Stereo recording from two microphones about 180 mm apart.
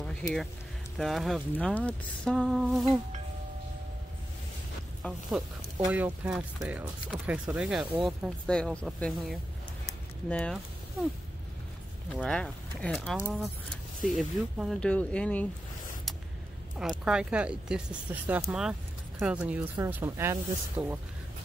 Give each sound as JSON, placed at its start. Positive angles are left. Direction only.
{"t": 0.0, "sound": "speech", "side_deg": 5}
{"t": 5.3, "sound": "speech", "side_deg": 0}
{"t": 12.1, "sound": "speech", "side_deg": 5}
{"t": 17.0, "sound": "speech", "side_deg": -5}